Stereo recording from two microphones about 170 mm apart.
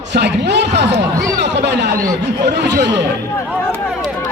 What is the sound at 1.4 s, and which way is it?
Speech, 90° right.